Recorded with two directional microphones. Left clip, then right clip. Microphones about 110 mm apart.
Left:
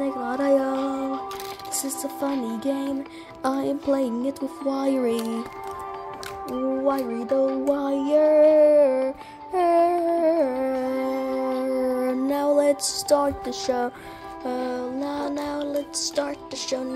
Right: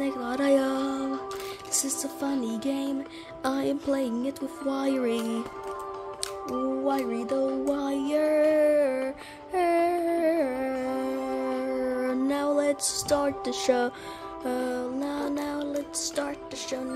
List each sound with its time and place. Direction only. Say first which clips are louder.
0.2 s music: left 2 dB; 15° right (ahead or behind)
0.7 s music: left 3 dB; centre (ahead or behind)
3.4 s music: left 4 dB; 15° left (ahead or behind)
6.8 s music: left 3 dB; 15° left (ahead or behind)
13.5 s music: even; 30° right (ahead or behind); by 16.3 s 5° right (ahead or behind)